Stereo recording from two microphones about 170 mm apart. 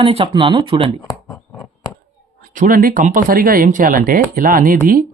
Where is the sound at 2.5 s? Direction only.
50° right (ahead or behind).